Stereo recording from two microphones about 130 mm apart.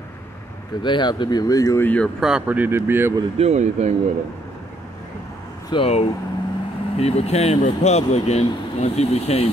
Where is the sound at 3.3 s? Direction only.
60° right (ahead or behind).